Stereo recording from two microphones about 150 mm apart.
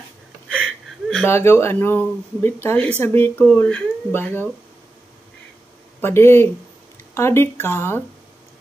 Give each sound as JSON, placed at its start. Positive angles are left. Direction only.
{"t": 0.5, "sound": "a sound", "side_deg": 5}
{"t": 1.2, "sound": "speech", "side_deg": 15}
{"t": 5.9, "sound": "speech", "side_deg": 15}